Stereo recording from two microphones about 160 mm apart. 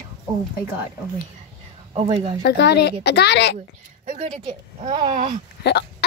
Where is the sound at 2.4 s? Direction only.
90° left.